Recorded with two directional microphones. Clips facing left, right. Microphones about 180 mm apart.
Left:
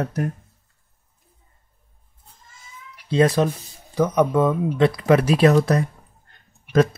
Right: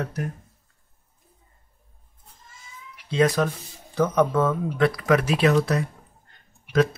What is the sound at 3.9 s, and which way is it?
Speech, 15° left (ahead or behind).